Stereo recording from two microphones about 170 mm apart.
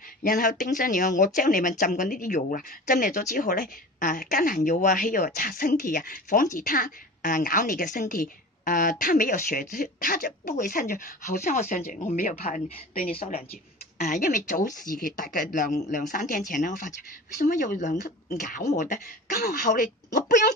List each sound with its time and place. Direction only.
0.2 s speech: 55° left (ahead or behind)
13.1 s a woman's voice: 35° left (ahead or behind)
13.9 s speech: 45° left (ahead or behind)
18.3 s speech: 70° left (ahead or behind)
18.7 s speech: 50° left (ahead or behind)